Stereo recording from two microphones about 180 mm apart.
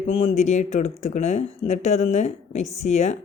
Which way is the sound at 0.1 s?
30° left (ahead or behind).